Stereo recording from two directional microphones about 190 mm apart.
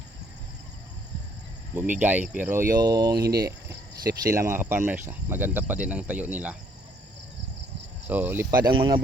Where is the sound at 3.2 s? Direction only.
55° right (ahead or behind).